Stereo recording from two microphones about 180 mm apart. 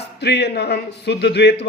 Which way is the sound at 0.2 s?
65° left (ahead or behind).